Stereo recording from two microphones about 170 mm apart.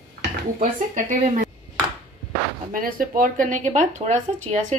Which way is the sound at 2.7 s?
55° right (ahead or behind).